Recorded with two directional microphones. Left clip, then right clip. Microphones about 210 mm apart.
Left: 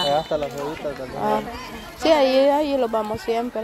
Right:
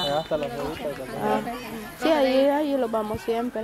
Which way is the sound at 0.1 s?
35° left (ahead or behind).